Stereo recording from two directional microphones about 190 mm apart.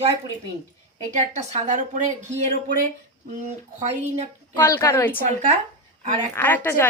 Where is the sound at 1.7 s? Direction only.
40° right (ahead or behind).